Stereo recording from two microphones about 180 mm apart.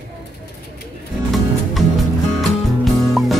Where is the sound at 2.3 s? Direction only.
Centre (ahead or behind).